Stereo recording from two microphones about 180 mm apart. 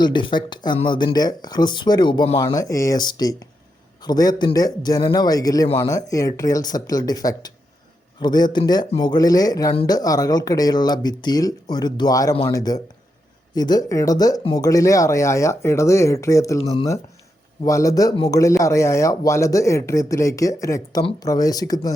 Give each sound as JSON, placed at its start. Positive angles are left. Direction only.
{"t": 0.0, "sound": "speech", "side_deg": 25}
{"t": 2.4, "sound": "speech", "side_deg": 20}
{"t": 5.6, "sound": "speech", "side_deg": 30}
{"t": 5.9, "sound": "speech", "side_deg": 20}
{"t": 17.7, "sound": "speech", "side_deg": 20}